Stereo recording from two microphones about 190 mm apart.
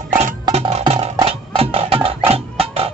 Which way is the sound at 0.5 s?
35° right (ahead or behind).